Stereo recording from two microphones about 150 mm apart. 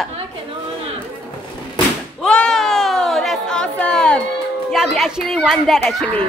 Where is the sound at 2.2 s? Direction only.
5° left (ahead or behind).